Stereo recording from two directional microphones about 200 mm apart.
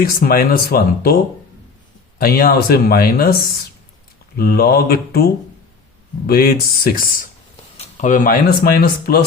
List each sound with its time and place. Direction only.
0.0 s speech: 50° left (ahead or behind)
2.1 s speech: 50° left (ahead or behind)
4.4 s speech: 50° left (ahead or behind)